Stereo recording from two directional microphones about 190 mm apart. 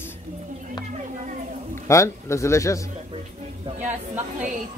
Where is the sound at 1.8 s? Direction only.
15° left (ahead or behind).